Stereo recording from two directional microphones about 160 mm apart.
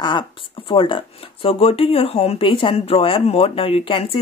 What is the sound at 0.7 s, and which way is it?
Speech, 30° left (ahead or behind).